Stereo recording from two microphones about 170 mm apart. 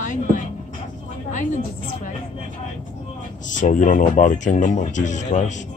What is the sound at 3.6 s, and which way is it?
Speech, 50° left (ahead or behind).